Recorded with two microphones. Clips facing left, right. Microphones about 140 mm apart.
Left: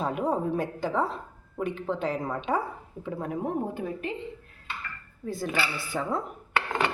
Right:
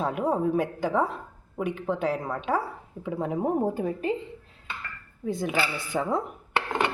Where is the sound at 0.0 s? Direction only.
5° right (ahead or behind).